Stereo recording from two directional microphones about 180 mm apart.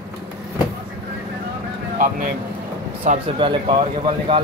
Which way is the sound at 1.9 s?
50° right (ahead or behind).